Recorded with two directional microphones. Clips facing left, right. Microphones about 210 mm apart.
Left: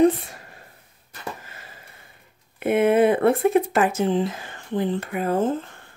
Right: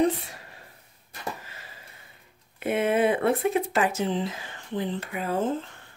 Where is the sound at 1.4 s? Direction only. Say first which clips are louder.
Left 2 dB; 50° left (ahead or behind).